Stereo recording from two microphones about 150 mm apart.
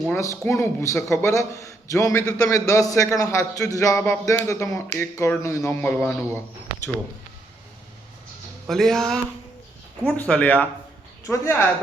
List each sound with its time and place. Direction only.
0.1 s a man's voice: 20° left (ahead or behind)
8.6 s speech: centre (ahead or behind); by 11.5 s 20° left (ahead or behind)